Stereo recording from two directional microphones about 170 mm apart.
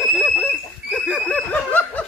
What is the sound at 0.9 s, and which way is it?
Snicker, 5° left (ahead or behind).